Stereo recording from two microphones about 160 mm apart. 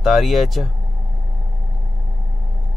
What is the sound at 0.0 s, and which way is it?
Speech, centre (ahead or behind).